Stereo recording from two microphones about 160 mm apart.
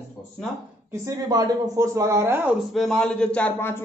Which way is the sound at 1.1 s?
25° right (ahead or behind).